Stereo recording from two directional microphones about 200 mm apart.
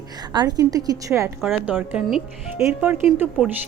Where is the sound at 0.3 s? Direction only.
20° right (ahead or behind).